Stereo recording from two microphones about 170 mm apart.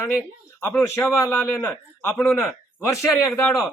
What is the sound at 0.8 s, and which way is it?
Speech, 15° left (ahead or behind).